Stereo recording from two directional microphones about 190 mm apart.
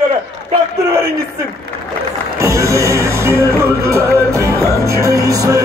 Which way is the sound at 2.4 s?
15° right (ahead or behind).